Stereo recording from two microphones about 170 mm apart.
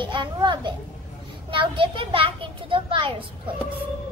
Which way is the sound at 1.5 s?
30° right (ahead or behind).